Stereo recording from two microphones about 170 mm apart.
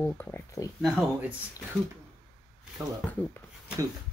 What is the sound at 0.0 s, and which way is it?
Speech, 15° left (ahead or behind).